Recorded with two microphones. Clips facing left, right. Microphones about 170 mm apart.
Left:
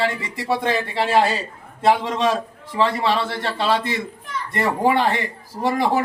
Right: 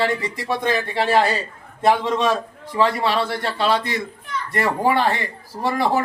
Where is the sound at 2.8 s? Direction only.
25° left (ahead or behind).